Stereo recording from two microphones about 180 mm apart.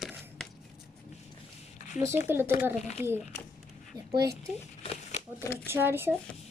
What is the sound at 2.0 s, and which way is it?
Speech, 15° right (ahead or behind).